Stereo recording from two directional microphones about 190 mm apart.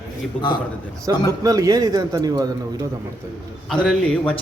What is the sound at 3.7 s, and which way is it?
Speech, 5° left (ahead or behind).